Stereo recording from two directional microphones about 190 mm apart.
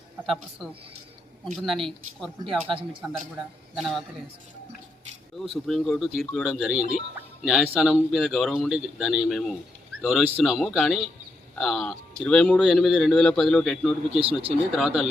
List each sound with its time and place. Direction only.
0.3 s speech: 5° right (ahead or behind)
5.4 s speech: centre (ahead or behind)
14.2 s speech: 30° right (ahead or behind)
14.8 s speech: 5° right (ahead or behind)